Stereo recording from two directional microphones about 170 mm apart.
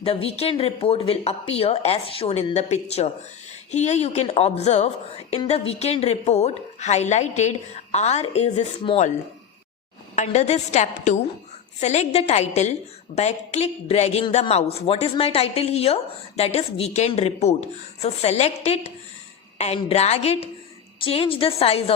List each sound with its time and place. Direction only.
0.0 s a woman's voice: 35° left (ahead or behind)
10.2 s a woman's voice: 40° left (ahead or behind)